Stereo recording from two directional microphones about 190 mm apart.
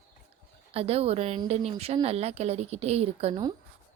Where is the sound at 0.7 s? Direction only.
30° right (ahead or behind).